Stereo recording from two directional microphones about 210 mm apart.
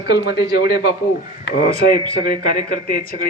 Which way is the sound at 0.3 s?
20° right (ahead or behind).